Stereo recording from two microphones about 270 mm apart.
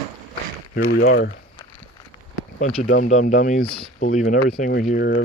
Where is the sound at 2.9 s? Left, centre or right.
Left.